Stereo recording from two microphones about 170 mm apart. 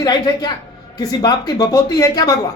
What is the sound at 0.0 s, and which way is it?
Speech, 25° left (ahead or behind).